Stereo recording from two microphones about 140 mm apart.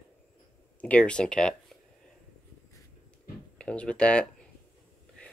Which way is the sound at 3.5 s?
10° left (ahead or behind).